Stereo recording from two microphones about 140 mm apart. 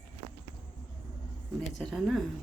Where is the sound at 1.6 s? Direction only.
Centre (ahead or behind).